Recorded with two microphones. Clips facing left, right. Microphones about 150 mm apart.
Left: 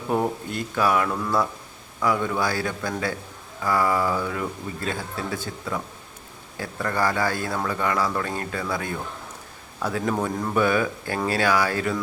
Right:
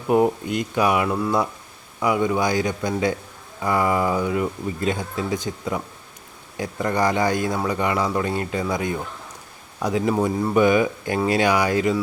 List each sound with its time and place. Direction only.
0.1 s speech: 15° right (ahead or behind)